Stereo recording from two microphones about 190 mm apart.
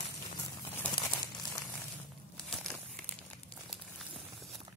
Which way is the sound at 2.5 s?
Centre (ahead or behind).